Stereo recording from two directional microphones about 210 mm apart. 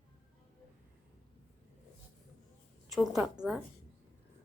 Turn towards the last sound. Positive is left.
turn(degrees=-5)  # may be behind; listen again after turning